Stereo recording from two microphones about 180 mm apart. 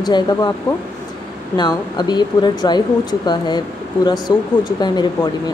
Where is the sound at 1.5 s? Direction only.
25° left (ahead or behind).